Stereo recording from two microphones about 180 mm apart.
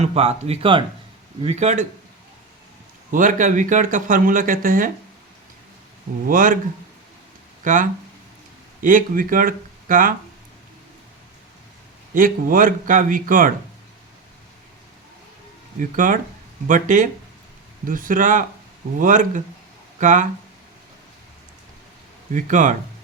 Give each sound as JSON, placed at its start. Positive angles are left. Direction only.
{"t": 0.0, "sound": "speech", "side_deg": -35}
{"t": 3.1, "sound": "speech", "side_deg": -45}
{"t": 6.2, "sound": "speech", "side_deg": -50}
{"t": 7.6, "sound": "speech", "side_deg": -45}
{"t": 12.1, "sound": "speech", "side_deg": -50}
{"t": 15.8, "sound": "speech", "side_deg": -50}
{"t": 22.3, "sound": "speech", "side_deg": -45}